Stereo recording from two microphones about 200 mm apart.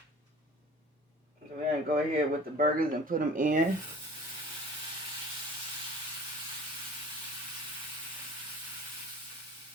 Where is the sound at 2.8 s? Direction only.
40° right (ahead or behind).